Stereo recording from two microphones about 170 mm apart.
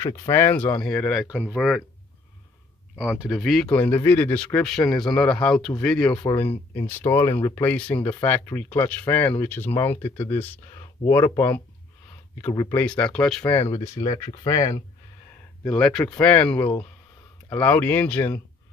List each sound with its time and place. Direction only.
0.3 s speech: 15° left (ahead or behind); by 1.8 s 5° right (ahead or behind)
3.0 s speech: 5° right (ahead or behind)
3.6 s speech: 10° left (ahead or behind)
6.7 s speech: 15° left (ahead or behind)
13.6 s speech: 35° left (ahead or behind)
14.2 s speech: 20° left (ahead or behind)
15.6 s speech: 5° left (ahead or behind)